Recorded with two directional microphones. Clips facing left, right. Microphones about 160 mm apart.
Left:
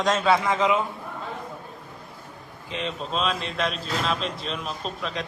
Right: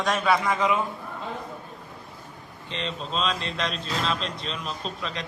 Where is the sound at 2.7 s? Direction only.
5° left (ahead or behind).